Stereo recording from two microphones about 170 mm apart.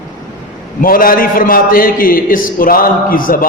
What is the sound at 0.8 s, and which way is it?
A man's voice, 55° left (ahead or behind).